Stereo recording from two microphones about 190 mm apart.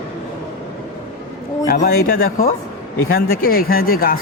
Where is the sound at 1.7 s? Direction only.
50° left (ahead or behind).